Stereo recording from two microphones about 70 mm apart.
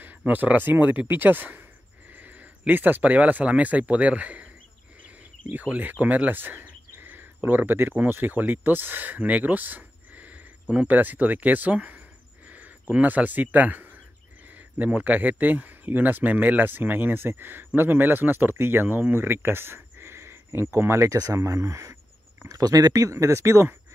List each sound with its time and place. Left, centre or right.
0.3 s speech: right
5.5 s speech: right
12.4 s a sound: right
12.9 s speech: right
21.2 s speech: right
22.5 s speech: right